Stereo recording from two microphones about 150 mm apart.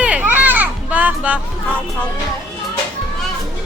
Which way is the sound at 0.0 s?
10° right (ahead or behind).